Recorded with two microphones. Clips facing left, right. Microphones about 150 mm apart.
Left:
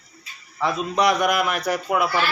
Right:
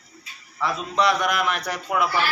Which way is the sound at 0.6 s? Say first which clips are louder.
Left 2 dB; 15° left (ahead or behind).